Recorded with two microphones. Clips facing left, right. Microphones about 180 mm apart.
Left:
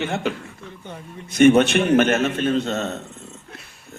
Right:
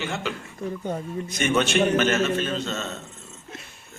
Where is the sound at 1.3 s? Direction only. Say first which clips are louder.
Left 9 dB; 60° left (ahead or behind).